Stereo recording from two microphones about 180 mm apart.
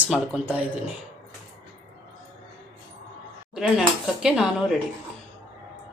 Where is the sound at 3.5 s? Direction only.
Centre (ahead or behind).